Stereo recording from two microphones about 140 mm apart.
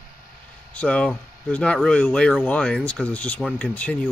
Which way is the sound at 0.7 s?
10° left (ahead or behind).